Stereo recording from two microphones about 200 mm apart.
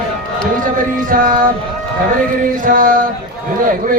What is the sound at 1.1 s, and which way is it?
Music, 45° right (ahead or behind).